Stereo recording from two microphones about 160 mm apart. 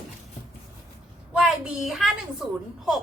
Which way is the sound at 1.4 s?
Centre (ahead or behind).